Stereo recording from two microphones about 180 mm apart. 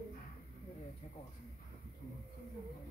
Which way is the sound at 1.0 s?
40° left (ahead or behind).